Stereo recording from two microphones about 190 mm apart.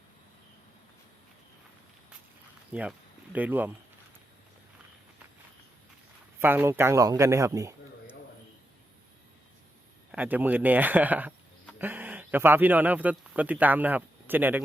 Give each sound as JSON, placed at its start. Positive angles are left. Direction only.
{"t": 2.7, "sound": "speech", "side_deg": -5}
{"t": 6.4, "sound": "speech", "side_deg": -10}
{"t": 10.1, "sound": "speech", "side_deg": -10}